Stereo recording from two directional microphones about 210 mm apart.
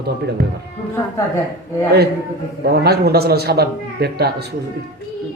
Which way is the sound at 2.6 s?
50° right (ahead or behind).